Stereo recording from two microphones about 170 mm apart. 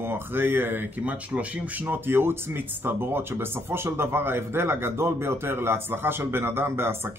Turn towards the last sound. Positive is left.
turn(degrees=-15)  # may be behind; listen again after turning